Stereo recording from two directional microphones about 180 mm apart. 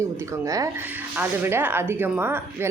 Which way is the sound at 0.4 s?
20° right (ahead or behind).